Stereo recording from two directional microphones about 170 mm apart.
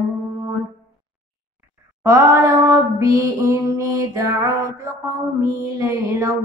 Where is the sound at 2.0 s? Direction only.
15° right (ahead or behind).